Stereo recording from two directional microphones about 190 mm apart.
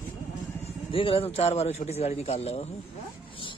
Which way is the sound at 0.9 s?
30° left (ahead or behind).